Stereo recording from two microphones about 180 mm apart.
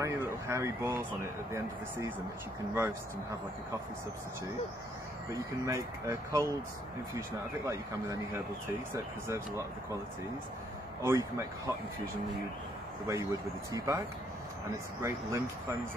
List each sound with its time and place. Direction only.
0.0 s speech: 15° right (ahead or behind)
5.3 s speech: 15° right (ahead or behind)
11.1 s speech: 15° right (ahead or behind)
13.0 s speech: 15° right (ahead or behind)